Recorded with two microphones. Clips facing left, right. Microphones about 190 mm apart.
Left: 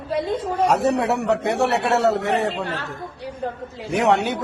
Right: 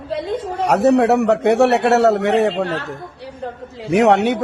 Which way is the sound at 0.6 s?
70° right (ahead or behind).